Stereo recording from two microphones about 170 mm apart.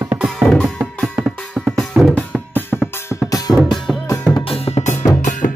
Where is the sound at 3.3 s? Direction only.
20° left (ahead or behind).